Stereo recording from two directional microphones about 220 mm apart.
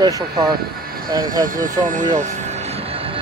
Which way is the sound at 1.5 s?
35° right (ahead or behind).